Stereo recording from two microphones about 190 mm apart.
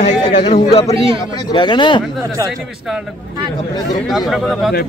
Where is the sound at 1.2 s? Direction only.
20° left (ahead or behind).